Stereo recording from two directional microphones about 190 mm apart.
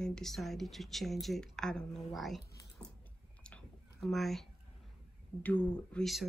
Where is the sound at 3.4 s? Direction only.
5° left (ahead or behind).